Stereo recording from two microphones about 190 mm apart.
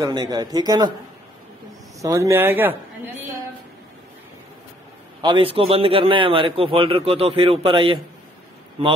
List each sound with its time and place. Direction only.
0.0 s a man's voice: 20° right (ahead or behind)
2.0 s speech: 15° right (ahead or behind)
5.2 s a man's voice: 25° right (ahead or behind)